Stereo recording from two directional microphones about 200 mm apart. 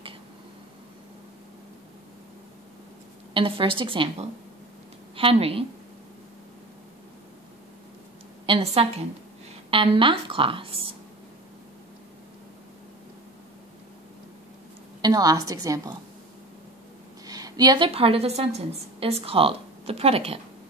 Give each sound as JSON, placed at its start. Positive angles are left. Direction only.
{"t": 3.3, "sound": "a woman's voice", "side_deg": -25}
{"t": 8.5, "sound": "a woman's voice", "side_deg": -30}
{"t": 15.0, "sound": "a woman's voice", "side_deg": -20}
{"t": 17.3, "sound": "a woman's voice", "side_deg": -20}